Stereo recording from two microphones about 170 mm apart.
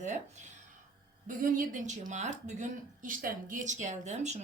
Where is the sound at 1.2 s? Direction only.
50° right (ahead or behind).